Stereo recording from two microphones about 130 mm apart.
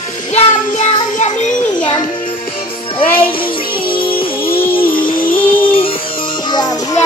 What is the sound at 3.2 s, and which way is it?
Music, 40° left (ahead or behind).